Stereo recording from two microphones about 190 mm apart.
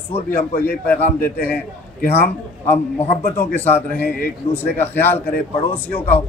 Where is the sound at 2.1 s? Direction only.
10° left (ahead or behind).